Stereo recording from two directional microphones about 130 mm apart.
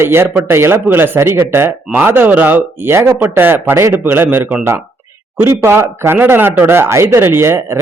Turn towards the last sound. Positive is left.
turn(degrees=-20)  # may be behind; listen again after turning